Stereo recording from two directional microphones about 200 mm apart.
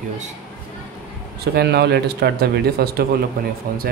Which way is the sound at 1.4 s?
55° right (ahead or behind).